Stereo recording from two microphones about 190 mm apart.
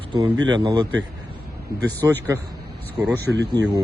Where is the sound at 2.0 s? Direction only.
15° right (ahead or behind).